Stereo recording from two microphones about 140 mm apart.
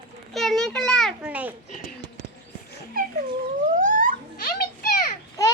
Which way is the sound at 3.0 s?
90° right.